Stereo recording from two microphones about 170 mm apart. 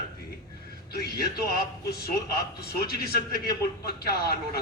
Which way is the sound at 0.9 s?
65° left (ahead or behind).